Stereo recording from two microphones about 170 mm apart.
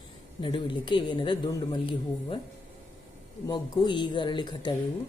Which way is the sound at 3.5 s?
25° left (ahead or behind).